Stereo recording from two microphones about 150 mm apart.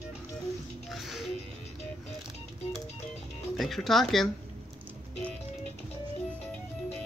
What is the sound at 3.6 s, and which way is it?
Speech, centre (ahead or behind).